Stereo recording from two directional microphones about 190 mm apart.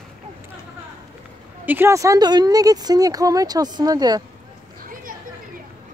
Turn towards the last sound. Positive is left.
turn(degrees=-20)  # may be behind; listen again after turning